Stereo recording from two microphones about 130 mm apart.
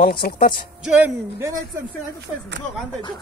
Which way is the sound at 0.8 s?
10° right (ahead or behind).